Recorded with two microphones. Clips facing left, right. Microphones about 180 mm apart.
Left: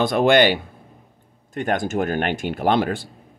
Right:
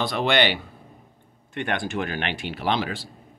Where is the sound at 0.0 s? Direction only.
50° left (ahead or behind).